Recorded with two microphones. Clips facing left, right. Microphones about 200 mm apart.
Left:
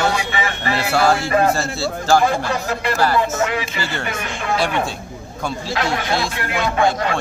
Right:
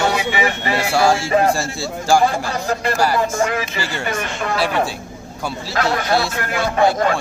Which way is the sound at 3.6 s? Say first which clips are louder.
Right 1 dB; 45° right (ahead or behind).